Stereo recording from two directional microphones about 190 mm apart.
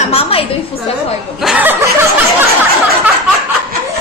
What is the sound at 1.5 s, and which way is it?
Chuckle, 10° right (ahead or behind).